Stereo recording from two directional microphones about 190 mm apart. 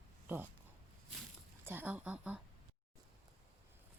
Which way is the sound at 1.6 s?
10° right (ahead or behind).